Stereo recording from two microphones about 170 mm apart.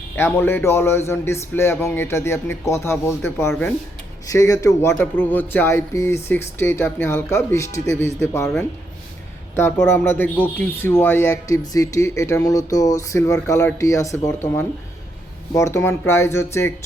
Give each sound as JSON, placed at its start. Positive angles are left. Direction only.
{"t": 0.2, "sound": "speech", "side_deg": 10}
{"t": 9.6, "sound": "speech", "side_deg": 15}